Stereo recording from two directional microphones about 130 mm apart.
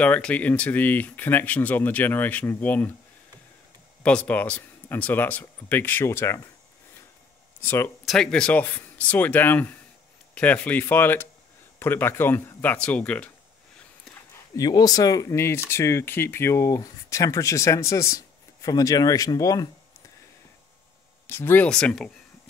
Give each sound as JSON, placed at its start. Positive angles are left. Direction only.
{"t": 0.0, "sound": "speech", "side_deg": 10}
{"t": 4.0, "sound": "speech", "side_deg": 10}
{"t": 7.6, "sound": "speech", "side_deg": 20}
{"t": 8.0, "sound": "speech", "side_deg": 5}
{"t": 14.3, "sound": "speech", "side_deg": 25}
{"t": 21.3, "sound": "speech", "side_deg": 15}
{"t": 21.6, "sound": "speech", "side_deg": 5}